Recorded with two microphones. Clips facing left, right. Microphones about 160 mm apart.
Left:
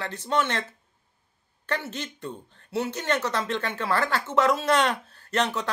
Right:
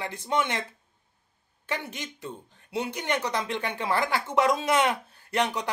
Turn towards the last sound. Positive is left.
turn(degrees=-15)  # may be behind; listen again after turning